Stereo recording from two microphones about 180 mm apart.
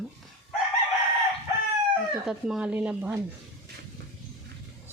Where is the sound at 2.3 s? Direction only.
5° right (ahead or behind).